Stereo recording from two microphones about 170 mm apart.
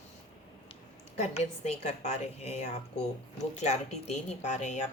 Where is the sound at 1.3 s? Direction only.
45° left (ahead or behind).